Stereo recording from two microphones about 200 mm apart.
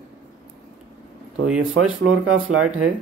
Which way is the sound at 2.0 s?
90° right.